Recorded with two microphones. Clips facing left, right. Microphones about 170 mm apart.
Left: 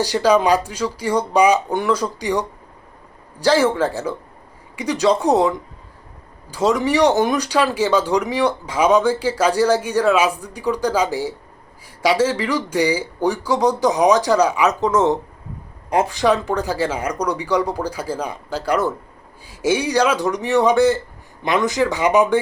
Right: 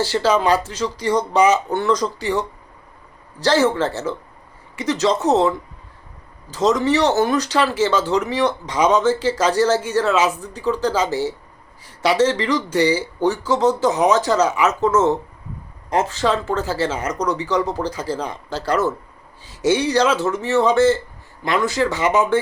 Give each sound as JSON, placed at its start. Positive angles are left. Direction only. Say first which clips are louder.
{"t": 0.0, "sound": "speech", "louder": "left 2 dB", "side_deg": 15}